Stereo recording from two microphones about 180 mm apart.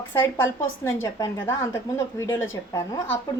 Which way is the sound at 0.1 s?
10° left (ahead or behind).